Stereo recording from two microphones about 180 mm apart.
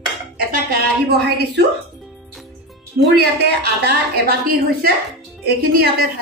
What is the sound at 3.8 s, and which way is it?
A woman's voice, 60° right (ahead or behind).